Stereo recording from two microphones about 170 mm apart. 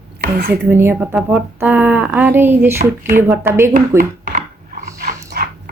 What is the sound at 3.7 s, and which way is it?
Speech, 55° right (ahead or behind).